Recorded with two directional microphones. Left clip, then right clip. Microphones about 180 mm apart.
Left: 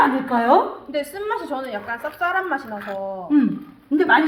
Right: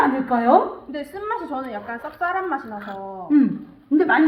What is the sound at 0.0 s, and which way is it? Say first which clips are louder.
Speech: left 1 dB; 10° right (ahead or behind).